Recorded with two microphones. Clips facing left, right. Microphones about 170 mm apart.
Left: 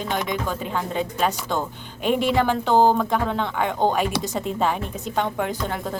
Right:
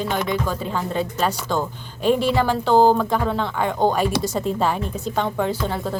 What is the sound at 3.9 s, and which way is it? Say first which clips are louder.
A woman's voice: right 2 dB; 40° right (ahead or behind).